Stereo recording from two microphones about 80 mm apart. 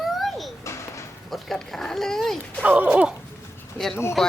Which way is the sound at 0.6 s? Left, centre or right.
Left.